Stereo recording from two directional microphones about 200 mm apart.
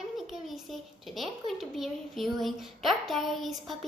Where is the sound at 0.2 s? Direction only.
Centre (ahead or behind).